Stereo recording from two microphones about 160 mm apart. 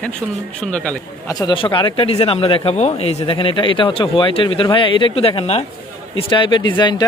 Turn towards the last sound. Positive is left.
turn(degrees=30)  # may be behind; listen again after turning